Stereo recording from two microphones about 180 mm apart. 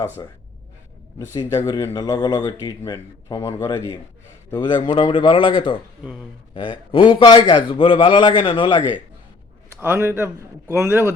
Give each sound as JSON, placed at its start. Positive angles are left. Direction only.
{"t": 1.2, "sound": "speech", "side_deg": 20}
{"t": 9.8, "sound": "a man's voice", "side_deg": -10}